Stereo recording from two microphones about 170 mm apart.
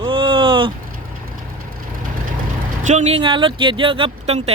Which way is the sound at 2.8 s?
45° right (ahead or behind).